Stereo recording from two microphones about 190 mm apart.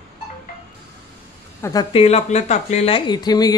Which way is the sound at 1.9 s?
35° left (ahead or behind).